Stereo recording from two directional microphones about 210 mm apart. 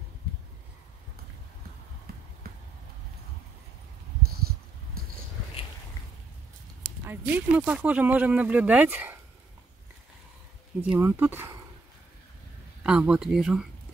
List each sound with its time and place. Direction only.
5.0 s a sound: 45° right (ahead or behind)
7.1 s speech: 10° right (ahead or behind)
10.9 s speech: 10° right (ahead or behind)
12.8 s speech: 5° right (ahead or behind)